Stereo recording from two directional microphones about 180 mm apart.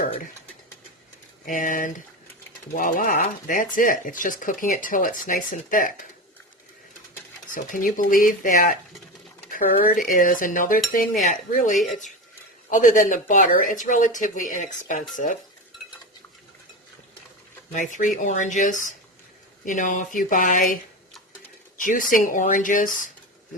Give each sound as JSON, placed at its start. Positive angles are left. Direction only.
{"t": 1.5, "sound": "speech", "side_deg": 50}
{"t": 7.5, "sound": "speech", "side_deg": 50}
{"t": 17.7, "sound": "speech", "side_deg": 45}
{"t": 21.8, "sound": "speech", "side_deg": 45}